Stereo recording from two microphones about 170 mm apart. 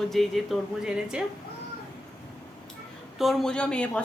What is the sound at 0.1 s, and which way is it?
A woman's voice, centre (ahead or behind).